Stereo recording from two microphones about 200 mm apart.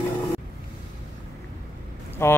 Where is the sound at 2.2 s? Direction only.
15° left (ahead or behind).